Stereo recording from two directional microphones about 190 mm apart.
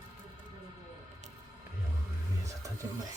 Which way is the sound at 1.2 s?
35° right (ahead or behind).